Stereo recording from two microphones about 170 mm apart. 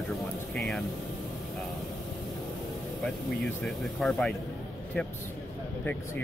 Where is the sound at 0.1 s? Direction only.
Centre (ahead or behind).